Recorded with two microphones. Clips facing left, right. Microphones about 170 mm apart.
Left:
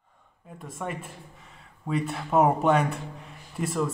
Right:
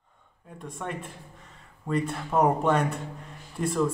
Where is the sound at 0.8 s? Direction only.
5° left (ahead or behind).